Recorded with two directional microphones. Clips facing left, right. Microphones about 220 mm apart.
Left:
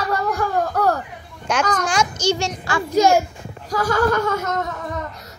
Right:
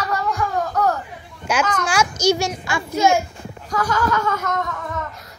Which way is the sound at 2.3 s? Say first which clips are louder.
Right 2 dB; 10° right (ahead or behind).